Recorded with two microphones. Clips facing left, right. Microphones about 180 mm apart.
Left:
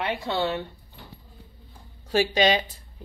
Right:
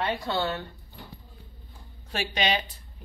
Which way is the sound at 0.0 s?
20° left (ahead or behind).